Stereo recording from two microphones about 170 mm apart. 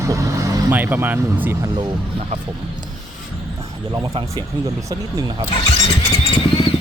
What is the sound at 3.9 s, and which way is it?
Speech, 25° right (ahead or behind).